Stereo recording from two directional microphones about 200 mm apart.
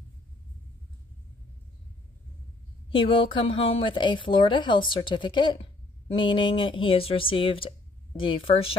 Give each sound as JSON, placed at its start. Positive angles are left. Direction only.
{"t": 2.9, "sound": "speech", "side_deg": 25}